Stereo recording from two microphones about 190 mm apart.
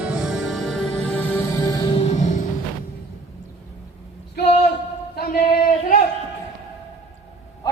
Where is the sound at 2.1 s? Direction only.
40° left (ahead or behind).